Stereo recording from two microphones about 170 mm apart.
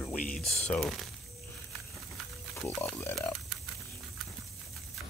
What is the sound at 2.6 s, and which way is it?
Speech, 10° left (ahead or behind).